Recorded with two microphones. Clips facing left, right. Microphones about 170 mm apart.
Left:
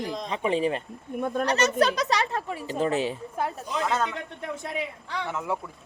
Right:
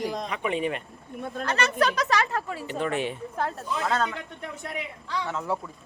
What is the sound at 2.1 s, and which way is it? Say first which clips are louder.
Speech: right 1 dB; 20° left (ahead or behind).